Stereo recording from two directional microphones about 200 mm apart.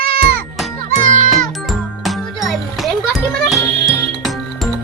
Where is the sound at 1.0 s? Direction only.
40° right (ahead or behind).